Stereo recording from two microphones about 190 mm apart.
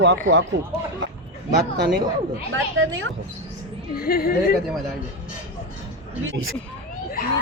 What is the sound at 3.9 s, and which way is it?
Speech, 50° left (ahead or behind).